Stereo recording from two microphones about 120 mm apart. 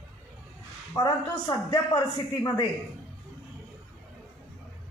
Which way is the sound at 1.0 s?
35° left (ahead or behind).